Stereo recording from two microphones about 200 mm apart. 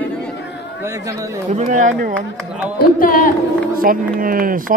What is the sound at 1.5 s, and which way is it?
Speech, 40° right (ahead or behind).